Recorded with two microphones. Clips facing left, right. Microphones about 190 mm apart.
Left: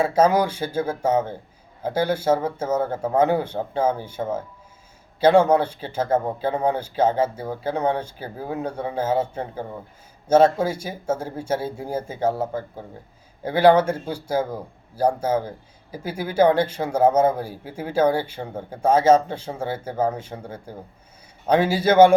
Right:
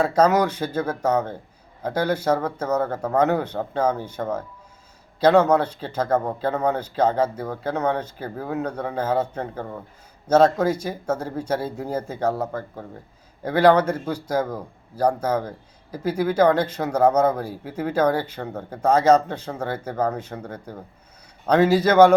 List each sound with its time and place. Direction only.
0.0 s speech: 10° left (ahead or behind)
13.4 s speech: 10° left (ahead or behind)
21.4 s speech: 10° left (ahead or behind)